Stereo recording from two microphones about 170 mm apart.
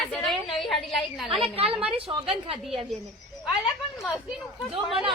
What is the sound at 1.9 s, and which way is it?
Speech, 35° right (ahead or behind).